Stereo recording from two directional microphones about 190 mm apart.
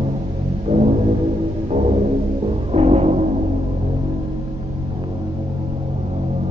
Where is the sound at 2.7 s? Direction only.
35° right (ahead or behind).